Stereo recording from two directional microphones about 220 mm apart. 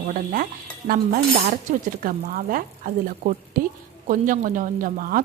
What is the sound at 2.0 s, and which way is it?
A woman's voice, 40° right (ahead or behind).